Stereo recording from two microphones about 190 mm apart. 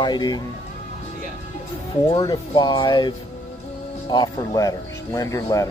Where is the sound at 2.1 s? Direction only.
20° left (ahead or behind).